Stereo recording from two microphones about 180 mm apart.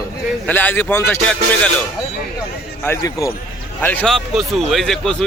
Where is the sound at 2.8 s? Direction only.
15° left (ahead or behind).